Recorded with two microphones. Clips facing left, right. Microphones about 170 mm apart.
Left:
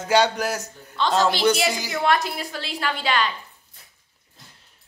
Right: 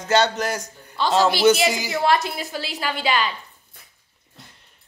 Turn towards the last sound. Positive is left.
turn(degrees=-65)  # may be behind; listen again after turning